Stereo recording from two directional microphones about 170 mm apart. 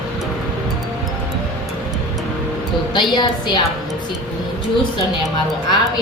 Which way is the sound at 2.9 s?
25° left (ahead or behind).